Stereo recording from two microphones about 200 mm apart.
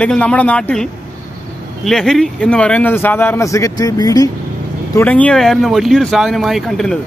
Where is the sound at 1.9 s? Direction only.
Centre (ahead or behind); by 4.3 s 20° left (ahead or behind).